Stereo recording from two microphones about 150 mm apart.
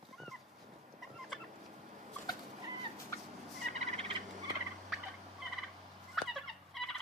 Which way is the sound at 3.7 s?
45° right (ahead or behind).